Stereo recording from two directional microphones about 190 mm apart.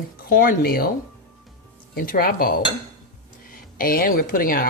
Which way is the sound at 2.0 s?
50° left (ahead or behind).